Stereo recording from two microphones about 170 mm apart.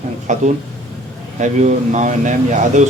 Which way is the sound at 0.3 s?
45° right (ahead or behind).